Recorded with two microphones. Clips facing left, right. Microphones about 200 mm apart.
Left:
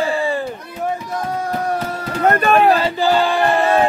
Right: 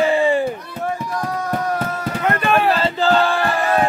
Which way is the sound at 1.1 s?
25° left (ahead or behind).